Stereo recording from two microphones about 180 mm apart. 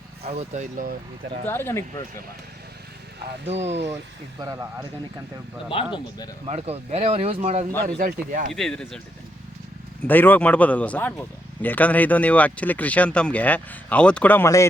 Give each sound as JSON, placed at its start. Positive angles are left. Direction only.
{"t": 0.2, "sound": "speech", "side_deg": -35}
{"t": 1.5, "sound": "a man's voice", "side_deg": 15}
{"t": 4.4, "sound": "speech", "side_deg": -20}
{"t": 5.6, "sound": "speech", "side_deg": 30}
{"t": 6.4, "sound": "speech", "side_deg": -35}
{"t": 7.9, "sound": "speech", "side_deg": -50}
{"t": 8.5, "sound": "speech", "side_deg": 5}
{"t": 10.0, "sound": "a man's voice", "side_deg": 10}